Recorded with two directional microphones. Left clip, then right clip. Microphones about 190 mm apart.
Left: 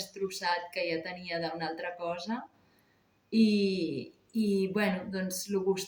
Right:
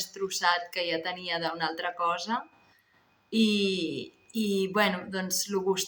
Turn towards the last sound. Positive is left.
turn(degrees=15)  # may be behind; listen again after turning